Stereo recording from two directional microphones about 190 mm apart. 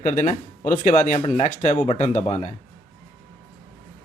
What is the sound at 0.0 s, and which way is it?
Speech, 40° left (ahead or behind).